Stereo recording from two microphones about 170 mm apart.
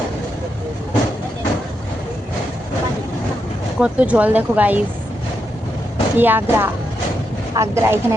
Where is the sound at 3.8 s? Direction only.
5° right (ahead or behind).